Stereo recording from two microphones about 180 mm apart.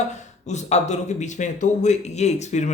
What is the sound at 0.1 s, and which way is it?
Speech, 40° left (ahead or behind).